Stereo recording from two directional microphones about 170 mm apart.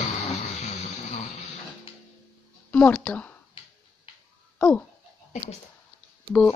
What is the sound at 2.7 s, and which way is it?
Speech, 5° left (ahead or behind).